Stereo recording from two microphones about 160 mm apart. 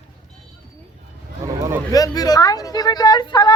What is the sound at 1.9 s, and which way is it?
Speech, 25° left (ahead or behind).